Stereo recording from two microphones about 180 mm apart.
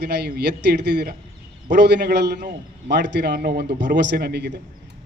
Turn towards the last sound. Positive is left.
turn(degrees=-65)  # may be behind; listen again after turning